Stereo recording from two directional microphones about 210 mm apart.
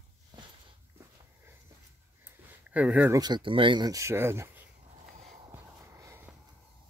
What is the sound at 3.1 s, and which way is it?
Speech, 20° right (ahead or behind).